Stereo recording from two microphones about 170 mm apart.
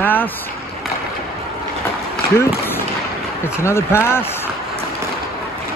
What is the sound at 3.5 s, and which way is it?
Speech, 15° left (ahead or behind).